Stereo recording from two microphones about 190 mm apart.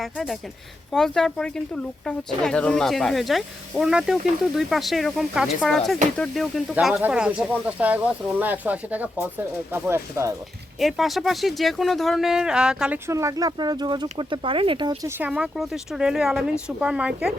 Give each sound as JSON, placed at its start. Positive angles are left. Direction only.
{"t": 0.0, "sound": "speech", "side_deg": 0}
{"t": 10.8, "sound": "speech", "side_deg": 0}
{"t": 13.1, "sound": "speech", "side_deg": -15}
{"t": 15.2, "sound": "speech", "side_deg": -5}